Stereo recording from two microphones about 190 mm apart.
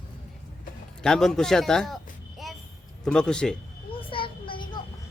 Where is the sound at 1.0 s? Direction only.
5° left (ahead or behind).